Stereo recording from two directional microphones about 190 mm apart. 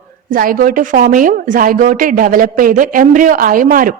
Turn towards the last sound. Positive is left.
turn(degrees=-45)  # may be behind; listen again after turning